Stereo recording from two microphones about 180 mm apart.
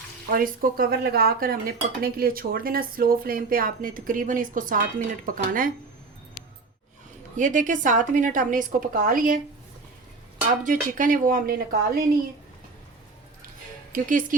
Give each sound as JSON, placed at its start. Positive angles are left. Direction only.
{"t": 0.3, "sound": "speech", "side_deg": -50}
{"t": 7.3, "sound": "speech", "side_deg": -45}
{"t": 10.6, "sound": "speech", "side_deg": -45}
{"t": 13.9, "sound": "speech", "side_deg": -45}